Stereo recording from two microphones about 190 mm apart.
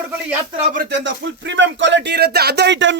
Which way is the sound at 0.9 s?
70° right (ahead or behind).